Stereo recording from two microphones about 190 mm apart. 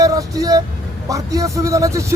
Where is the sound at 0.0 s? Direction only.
20° right (ahead or behind).